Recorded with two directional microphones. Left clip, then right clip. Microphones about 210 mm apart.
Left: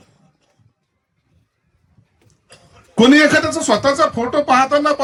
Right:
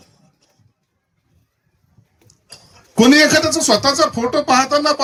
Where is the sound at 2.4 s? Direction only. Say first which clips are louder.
Right 3 dB; 15° right (ahead or behind).